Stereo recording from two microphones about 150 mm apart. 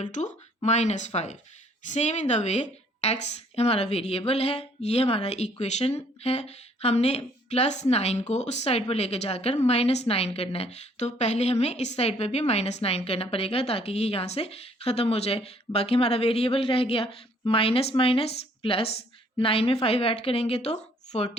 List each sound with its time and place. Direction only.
0.0 s a woman's voice: 55° left (ahead or behind)